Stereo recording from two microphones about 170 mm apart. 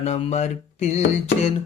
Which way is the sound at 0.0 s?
40° left (ahead or behind).